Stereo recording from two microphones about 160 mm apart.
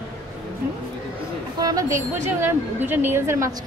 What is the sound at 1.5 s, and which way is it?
A woman's voice, 25° right (ahead or behind).